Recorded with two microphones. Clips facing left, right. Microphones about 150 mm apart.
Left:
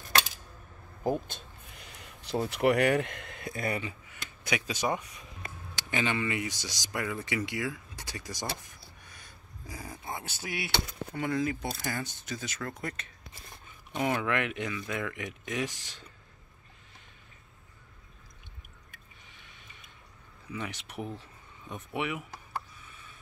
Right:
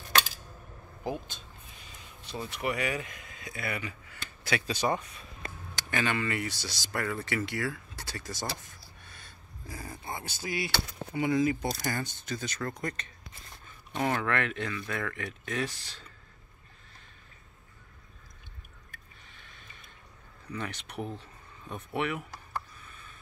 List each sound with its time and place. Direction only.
1.0 s speech: 50° left (ahead or behind)
1.8 s a sound: 70° left (ahead or behind)
3.5 s speech: 40° left (ahead or behind)
3.8 s speech: 20° left (ahead or behind)
8.8 s a sound: 15° left (ahead or behind)
11.1 s speech: 10° right (ahead or behind)
11.6 s speech: 5° left (ahead or behind)
19.3 s a sound: 15° left (ahead or behind)
20.4 s speech: 10° left (ahead or behind)